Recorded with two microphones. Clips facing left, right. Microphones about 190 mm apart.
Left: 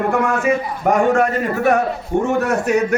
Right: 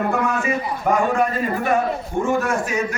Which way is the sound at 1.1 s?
75° left (ahead or behind).